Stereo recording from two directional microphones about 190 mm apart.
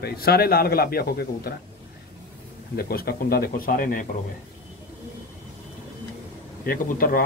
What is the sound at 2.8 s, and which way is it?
Speech, 55° left (ahead or behind).